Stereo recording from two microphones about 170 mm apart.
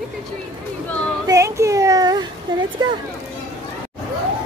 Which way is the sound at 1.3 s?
15° right (ahead or behind).